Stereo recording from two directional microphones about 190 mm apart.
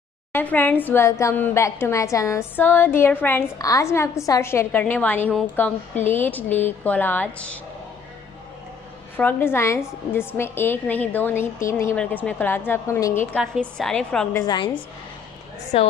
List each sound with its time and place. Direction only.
0.3 s a woman's voice: 10° left (ahead or behind)
9.1 s a woman's voice: 10° left (ahead or behind)
13.4 s a woman's voice: centre (ahead or behind)
14.3 s a woman's voice: 20° left (ahead or behind)
15.7 s a woman's voice: 30° left (ahead or behind)